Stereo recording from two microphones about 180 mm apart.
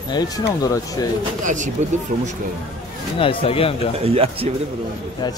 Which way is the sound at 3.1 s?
30° left (ahead or behind).